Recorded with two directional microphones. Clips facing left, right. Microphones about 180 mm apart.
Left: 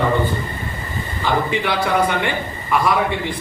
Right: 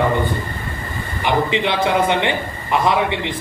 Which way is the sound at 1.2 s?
20° right (ahead or behind).